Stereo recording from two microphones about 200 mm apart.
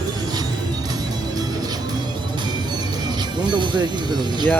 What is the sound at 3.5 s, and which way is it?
Speech, 25° right (ahead or behind).